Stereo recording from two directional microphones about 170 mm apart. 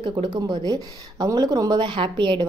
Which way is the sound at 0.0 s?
25° right (ahead or behind).